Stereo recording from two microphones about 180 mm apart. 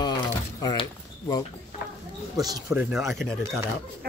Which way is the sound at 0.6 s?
20° left (ahead or behind).